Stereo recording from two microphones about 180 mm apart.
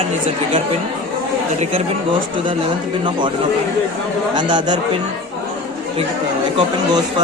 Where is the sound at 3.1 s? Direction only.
25° right (ahead or behind).